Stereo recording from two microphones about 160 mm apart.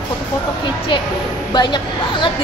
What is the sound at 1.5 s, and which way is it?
Speech, 30° left (ahead or behind).